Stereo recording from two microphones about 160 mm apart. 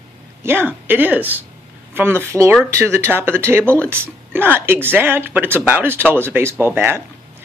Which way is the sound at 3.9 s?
15° right (ahead or behind).